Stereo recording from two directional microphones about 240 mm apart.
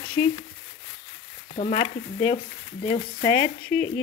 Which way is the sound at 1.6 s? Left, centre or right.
Left.